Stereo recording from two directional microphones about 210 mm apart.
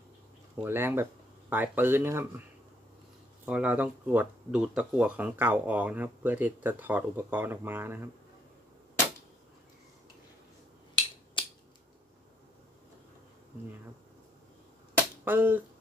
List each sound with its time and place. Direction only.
0.6 s speech: 10° right (ahead or behind)
3.4 s speech: 5° right (ahead or behind)
11.4 s scissors: 25° left (ahead or behind)
15.2 s speech: 10° right (ahead or behind)